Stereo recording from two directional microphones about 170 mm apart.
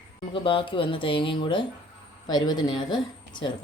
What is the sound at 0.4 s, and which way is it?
Speech, 30° left (ahead or behind).